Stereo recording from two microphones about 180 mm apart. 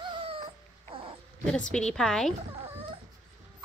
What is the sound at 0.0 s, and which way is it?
Dog, 30° right (ahead or behind).